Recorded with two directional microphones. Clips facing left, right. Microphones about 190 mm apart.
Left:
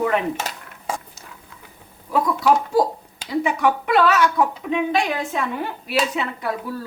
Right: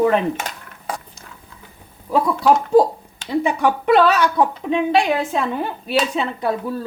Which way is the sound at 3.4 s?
30° right (ahead or behind).